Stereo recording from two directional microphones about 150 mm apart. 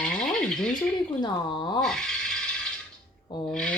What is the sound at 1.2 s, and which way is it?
Speech, 30° left (ahead or behind).